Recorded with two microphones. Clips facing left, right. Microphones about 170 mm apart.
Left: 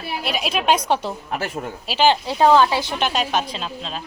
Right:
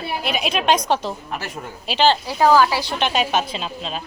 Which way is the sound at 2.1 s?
25° left (ahead or behind).